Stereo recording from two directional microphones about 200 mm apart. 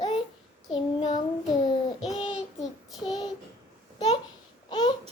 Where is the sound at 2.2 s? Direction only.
25° left (ahead or behind).